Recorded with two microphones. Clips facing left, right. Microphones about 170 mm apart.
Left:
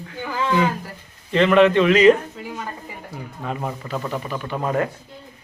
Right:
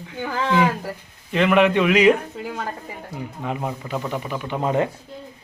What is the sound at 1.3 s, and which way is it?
Speech, 10° right (ahead or behind).